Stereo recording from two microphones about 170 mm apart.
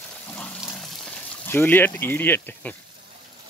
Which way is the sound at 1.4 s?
10° left (ahead or behind).